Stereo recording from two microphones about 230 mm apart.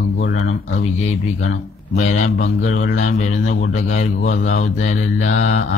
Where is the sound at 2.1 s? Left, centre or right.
Left.